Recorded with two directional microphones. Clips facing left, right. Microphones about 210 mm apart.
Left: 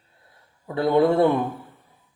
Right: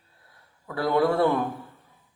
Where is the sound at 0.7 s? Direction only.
20° left (ahead or behind).